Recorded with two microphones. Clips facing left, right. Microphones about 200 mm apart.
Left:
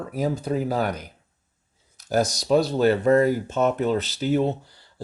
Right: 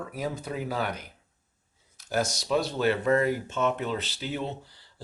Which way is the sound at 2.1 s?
40° left (ahead or behind).